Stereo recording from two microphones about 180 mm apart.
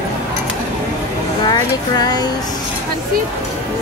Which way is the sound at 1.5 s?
20° left (ahead or behind).